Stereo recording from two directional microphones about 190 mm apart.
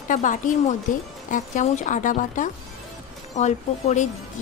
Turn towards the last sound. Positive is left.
turn(degrees=35)  # may be behind; listen again after turning